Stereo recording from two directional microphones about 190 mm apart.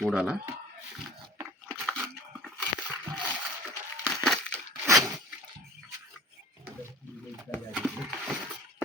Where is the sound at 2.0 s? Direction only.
5° right (ahead or behind).